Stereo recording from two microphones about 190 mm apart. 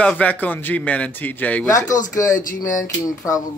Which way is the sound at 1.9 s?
40° left (ahead or behind).